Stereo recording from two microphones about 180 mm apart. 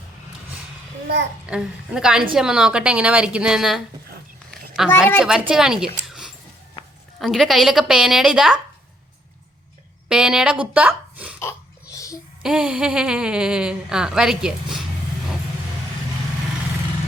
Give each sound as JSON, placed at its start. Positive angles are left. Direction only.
{"t": 1.0, "sound": "a child's voice", "side_deg": -75}
{"t": 1.5, "sound": "a woman's voice", "side_deg": -5}
{"t": 10.1, "sound": "a woman's voice", "side_deg": -5}
{"t": 11.3, "sound": "burping", "side_deg": 15}
{"t": 12.4, "sound": "speech", "side_deg": -5}